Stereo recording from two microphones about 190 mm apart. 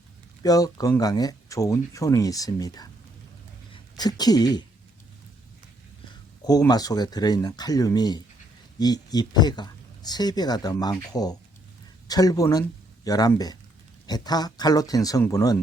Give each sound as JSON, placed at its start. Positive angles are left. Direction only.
{"t": 0.4, "sound": "speech", "side_deg": 20}
{"t": 3.9, "sound": "speech", "side_deg": 20}
{"t": 6.7, "sound": "speech", "side_deg": 20}